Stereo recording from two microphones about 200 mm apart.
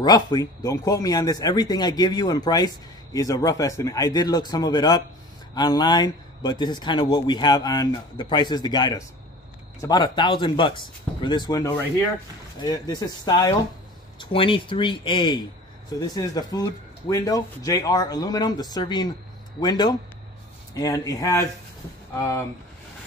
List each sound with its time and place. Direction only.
0.0 s speech: 20° left (ahead or behind)